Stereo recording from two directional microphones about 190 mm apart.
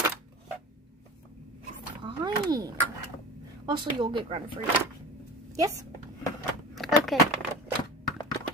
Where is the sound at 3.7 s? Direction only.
25° right (ahead or behind).